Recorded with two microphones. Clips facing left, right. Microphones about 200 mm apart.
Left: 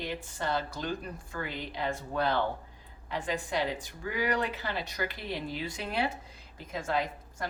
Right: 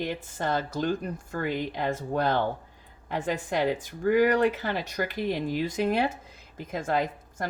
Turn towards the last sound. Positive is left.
turn(degrees=-45)  # may be behind; listen again after turning